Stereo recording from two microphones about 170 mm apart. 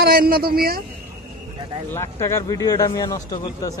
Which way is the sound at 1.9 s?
15° left (ahead or behind).